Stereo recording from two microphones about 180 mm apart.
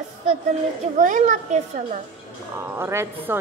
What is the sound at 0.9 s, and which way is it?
A child's voice, 45° right (ahead or behind).